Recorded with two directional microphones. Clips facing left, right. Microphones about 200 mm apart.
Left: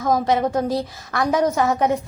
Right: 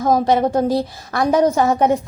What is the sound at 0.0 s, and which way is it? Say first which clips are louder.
A woman's voice: right 3 dB; 30° right (ahead or behind).